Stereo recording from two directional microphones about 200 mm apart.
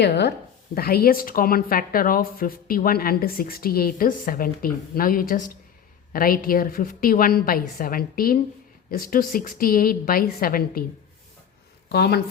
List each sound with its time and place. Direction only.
0.0 s speech: 55° left (ahead or behind)
11.9 s speech: 55° left (ahead or behind)